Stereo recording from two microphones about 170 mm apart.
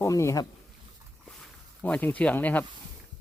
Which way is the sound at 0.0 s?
15° left (ahead or behind).